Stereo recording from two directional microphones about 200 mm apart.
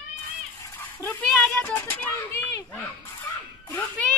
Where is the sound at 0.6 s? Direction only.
10° left (ahead or behind).